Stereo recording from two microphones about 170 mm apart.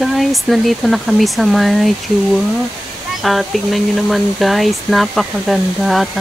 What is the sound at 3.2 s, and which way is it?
Speech, centre (ahead or behind).